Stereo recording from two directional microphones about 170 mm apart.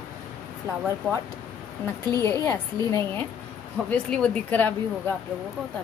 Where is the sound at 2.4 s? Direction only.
15° left (ahead or behind).